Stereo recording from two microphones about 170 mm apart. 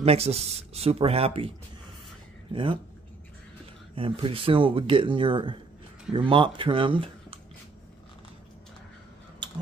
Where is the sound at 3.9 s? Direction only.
30° right (ahead or behind).